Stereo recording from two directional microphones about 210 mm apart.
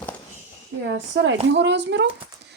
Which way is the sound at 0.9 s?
55° right (ahead or behind).